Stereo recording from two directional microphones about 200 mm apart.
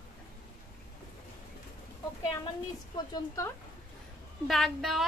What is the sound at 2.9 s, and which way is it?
Speech, 20° left (ahead or behind).